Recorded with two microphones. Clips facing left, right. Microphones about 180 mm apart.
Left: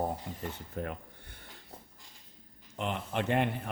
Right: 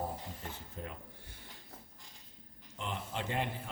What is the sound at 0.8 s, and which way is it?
Speech, 65° left (ahead or behind).